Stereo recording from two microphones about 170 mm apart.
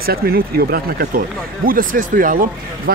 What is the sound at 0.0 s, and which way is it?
Speech, 60° right (ahead or behind).